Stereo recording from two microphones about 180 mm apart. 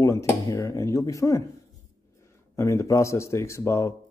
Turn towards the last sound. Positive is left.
turn(degrees=15)  # may be behind; listen again after turning